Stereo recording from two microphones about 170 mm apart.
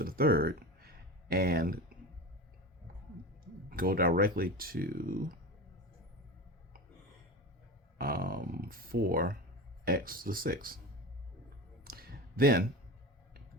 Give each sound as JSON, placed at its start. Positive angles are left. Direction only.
{"t": 0.0, "sound": "speech", "side_deg": -60}
{"t": 3.7, "sound": "speech", "side_deg": -60}
{"t": 7.9, "sound": "speech", "side_deg": -60}
{"t": 11.9, "sound": "a sound", "side_deg": -60}